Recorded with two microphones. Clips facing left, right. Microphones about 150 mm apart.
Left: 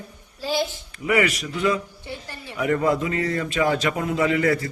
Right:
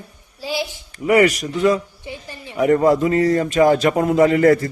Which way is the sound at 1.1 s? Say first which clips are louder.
Right 7 dB; 40° right (ahead or behind).